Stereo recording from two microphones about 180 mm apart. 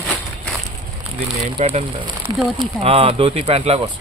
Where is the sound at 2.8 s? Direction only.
30° right (ahead or behind).